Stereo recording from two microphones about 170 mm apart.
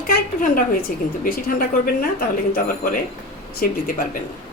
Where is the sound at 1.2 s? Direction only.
55° left (ahead or behind).